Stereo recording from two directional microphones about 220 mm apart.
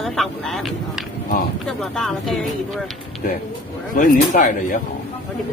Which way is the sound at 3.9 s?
40° left (ahead or behind).